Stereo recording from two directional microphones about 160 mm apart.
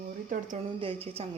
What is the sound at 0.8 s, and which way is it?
Speech, 35° right (ahead or behind).